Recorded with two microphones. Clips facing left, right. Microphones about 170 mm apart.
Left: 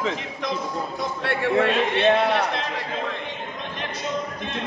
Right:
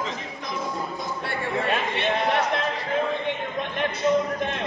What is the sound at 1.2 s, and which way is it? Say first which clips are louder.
Speech: left 7 dB; 70° left (ahead or behind).